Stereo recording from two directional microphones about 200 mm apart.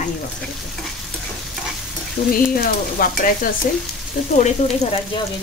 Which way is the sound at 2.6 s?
45° left (ahead or behind).